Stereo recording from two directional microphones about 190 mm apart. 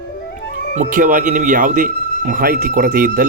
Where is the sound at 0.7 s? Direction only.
45° right (ahead or behind).